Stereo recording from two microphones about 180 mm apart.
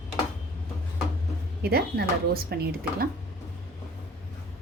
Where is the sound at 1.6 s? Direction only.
60° right (ahead or behind).